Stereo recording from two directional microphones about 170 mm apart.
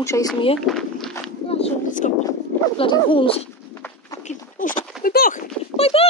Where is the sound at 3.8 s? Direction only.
10° left (ahead or behind).